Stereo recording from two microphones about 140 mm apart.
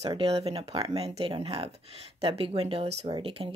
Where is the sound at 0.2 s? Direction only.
45° right (ahead or behind).